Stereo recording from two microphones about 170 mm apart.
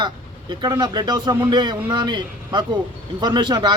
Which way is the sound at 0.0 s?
25° right (ahead or behind).